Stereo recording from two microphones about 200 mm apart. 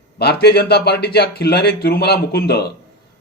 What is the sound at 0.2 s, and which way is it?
Speech, 55° left (ahead or behind).